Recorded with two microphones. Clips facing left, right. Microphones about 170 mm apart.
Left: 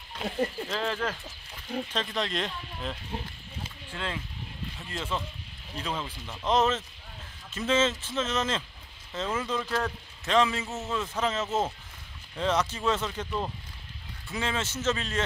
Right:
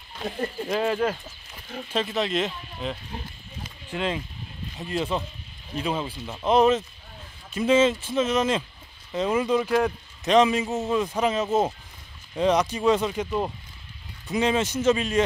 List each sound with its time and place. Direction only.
0.7 s a man's voice: 15° right (ahead or behind)
3.9 s a man's voice: 15° right (ahead or behind)